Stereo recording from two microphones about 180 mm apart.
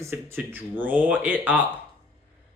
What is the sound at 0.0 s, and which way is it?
Speech, 15° right (ahead or behind).